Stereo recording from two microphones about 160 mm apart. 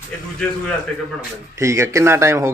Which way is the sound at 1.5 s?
20° right (ahead or behind).